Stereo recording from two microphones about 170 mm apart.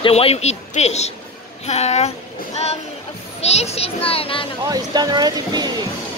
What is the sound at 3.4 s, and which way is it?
A child's voice, 40° left (ahead or behind).